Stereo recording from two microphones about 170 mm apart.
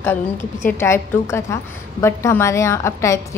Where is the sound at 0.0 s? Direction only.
15° left (ahead or behind).